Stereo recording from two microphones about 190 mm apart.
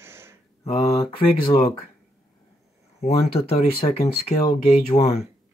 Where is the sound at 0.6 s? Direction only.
30° left (ahead or behind).